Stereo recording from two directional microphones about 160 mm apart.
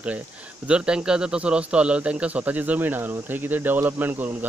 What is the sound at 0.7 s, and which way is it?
A man's voice, 5° right (ahead or behind).